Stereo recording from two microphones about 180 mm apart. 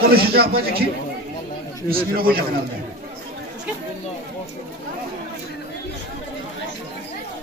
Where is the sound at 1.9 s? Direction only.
55° right (ahead or behind).